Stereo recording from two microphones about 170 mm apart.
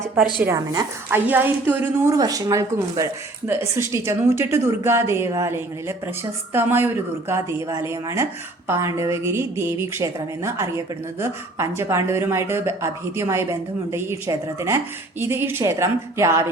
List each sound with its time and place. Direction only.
0.4 s a woman's voice: 20° right (ahead or behind)